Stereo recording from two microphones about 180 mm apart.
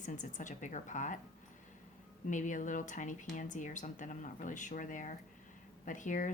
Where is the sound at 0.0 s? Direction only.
45° left (ahead or behind).